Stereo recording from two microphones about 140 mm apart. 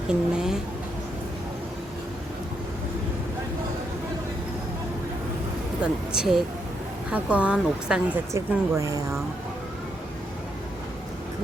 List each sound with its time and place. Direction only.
0.1 s speech: 5° right (ahead or behind)
5.8 s speech: 5° right (ahead or behind)
8.3 s speech: 20° right (ahead or behind)